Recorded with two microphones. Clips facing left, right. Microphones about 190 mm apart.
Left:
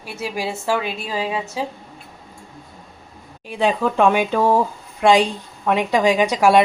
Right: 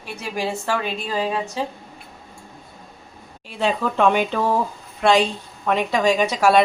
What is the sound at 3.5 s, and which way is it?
A woman's voice, 15° left (ahead or behind).